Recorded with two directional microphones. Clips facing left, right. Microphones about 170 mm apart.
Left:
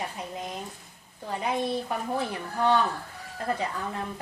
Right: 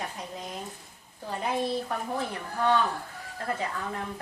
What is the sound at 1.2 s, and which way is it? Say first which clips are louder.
Speech: left 1 dB; centre (ahead or behind).